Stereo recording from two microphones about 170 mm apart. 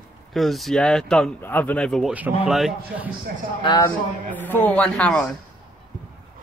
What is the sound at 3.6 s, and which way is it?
Speech, 25° left (ahead or behind).